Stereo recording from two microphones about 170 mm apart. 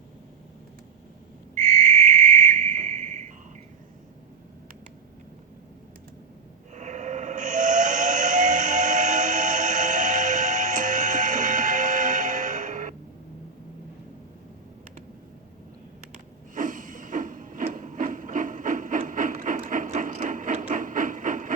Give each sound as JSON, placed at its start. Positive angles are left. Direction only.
{"t": 1.5, "sound": "cricket", "side_deg": -50}
{"t": 6.7, "sound": "steam whistle", "side_deg": -45}
{"t": 16.6, "sound": "printer", "side_deg": -50}